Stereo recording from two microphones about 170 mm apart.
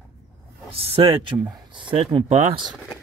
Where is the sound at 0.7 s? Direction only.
35° right (ahead or behind).